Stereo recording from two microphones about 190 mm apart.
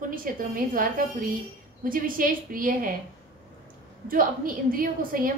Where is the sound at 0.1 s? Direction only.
45° right (ahead or behind).